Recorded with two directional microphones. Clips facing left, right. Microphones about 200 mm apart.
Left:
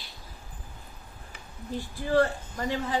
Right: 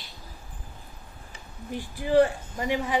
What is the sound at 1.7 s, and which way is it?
Speech, 15° right (ahead or behind).